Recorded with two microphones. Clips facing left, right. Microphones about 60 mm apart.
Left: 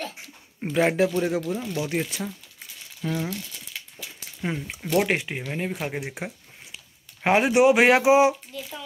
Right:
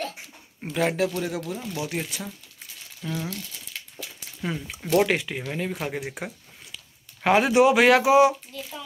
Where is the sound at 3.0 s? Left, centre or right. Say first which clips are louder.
Left 3 dB; left.